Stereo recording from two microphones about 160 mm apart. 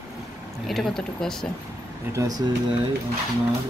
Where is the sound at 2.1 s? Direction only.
25° right (ahead or behind).